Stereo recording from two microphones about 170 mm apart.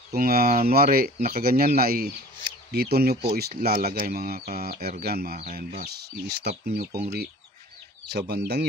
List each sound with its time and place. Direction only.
0.1 s speech: 60° right (ahead or behind)